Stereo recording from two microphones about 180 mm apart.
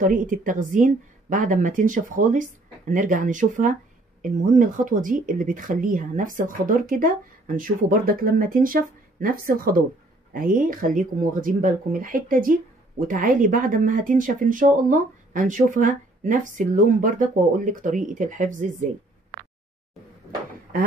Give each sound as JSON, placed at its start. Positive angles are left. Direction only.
{"t": 0.0, "sound": "speech", "side_deg": -50}